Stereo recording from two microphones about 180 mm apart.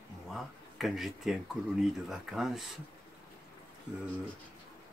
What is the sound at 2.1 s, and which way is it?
Speech, centre (ahead or behind).